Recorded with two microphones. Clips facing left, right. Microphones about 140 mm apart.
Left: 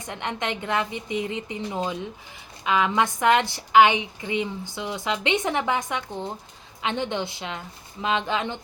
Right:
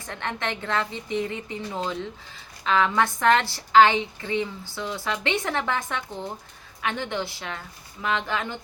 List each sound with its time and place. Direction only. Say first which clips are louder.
0.0 s a woman's voice: left 1 dB; 15° left (ahead or behind)